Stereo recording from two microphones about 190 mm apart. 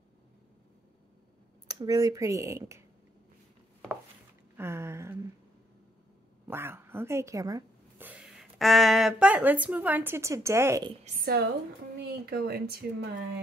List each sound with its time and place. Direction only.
1.7 s a woman's voice: 20° right (ahead or behind)
4.6 s a woman's voice: 15° right (ahead or behind)
6.4 s speech: 10° right (ahead or behind)
8.1 s a woman's voice: 5° right (ahead or behind)
11.2 s speech: 55° right (ahead or behind)